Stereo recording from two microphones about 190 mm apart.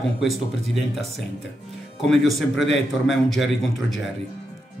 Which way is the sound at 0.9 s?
Centre (ahead or behind).